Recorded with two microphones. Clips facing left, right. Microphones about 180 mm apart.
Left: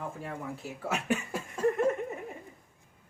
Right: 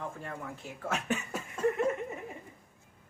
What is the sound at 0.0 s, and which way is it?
Speech, 10° left (ahead or behind).